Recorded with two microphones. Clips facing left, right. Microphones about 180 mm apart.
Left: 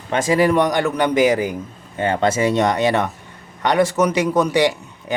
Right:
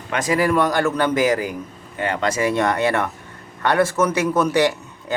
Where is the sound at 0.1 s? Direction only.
25° left (ahead or behind).